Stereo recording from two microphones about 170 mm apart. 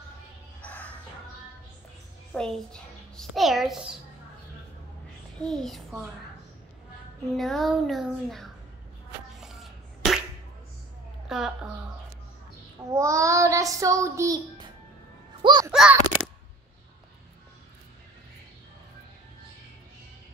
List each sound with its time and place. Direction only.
0.6 s music: 10° left (ahead or behind)
2.3 s a child's voice: 5° left (ahead or behind)
5.4 s a child's voice: centre (ahead or behind)
7.3 s a child's voice: centre (ahead or behind)
9.4 s cough: centre (ahead or behind)
11.2 s a woman's voice: 5° right (ahead or behind)
12.9 s child singing: 20° right (ahead or behind)
15.4 s a child's voice: 25° right (ahead or behind)
15.7 s a child's voice: 5° right (ahead or behind)